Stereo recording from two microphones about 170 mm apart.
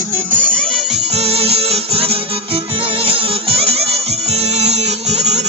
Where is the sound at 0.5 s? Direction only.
35° right (ahead or behind).